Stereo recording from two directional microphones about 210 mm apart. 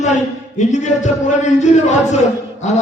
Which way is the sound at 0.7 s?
35° left (ahead or behind).